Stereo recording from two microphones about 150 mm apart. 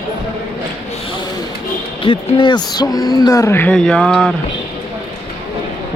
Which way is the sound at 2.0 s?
30° left (ahead or behind).